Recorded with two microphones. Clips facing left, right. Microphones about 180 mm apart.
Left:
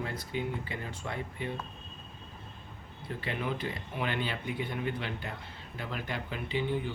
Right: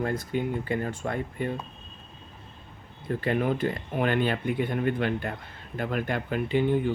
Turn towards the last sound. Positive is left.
turn(degrees=-50)  # may be behind; listen again after turning